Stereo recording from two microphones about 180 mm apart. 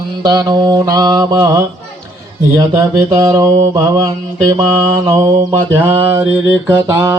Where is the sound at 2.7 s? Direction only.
15° right (ahead or behind).